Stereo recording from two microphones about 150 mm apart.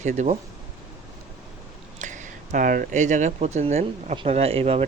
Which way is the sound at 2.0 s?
55° right (ahead or behind).